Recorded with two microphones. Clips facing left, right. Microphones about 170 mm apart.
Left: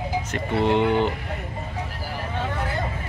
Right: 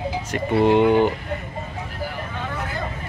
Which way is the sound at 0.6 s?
15° right (ahead or behind).